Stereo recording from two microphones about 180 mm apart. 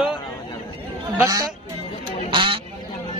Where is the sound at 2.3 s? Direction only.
30° right (ahead or behind).